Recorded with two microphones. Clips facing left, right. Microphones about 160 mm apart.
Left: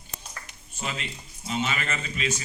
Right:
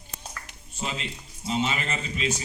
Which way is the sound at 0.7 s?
30° right (ahead or behind).